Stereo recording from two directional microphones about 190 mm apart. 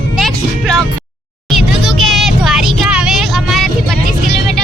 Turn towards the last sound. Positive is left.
turn(degrees=0)  # may be behind; listen again after turning